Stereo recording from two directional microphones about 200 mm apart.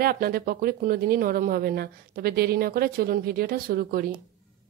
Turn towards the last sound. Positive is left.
turn(degrees=-45)  # may be behind; listen again after turning